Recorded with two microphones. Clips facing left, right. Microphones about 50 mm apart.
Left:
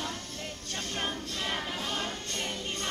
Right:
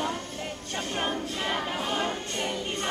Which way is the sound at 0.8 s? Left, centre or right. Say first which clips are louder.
Right 5 dB; centre.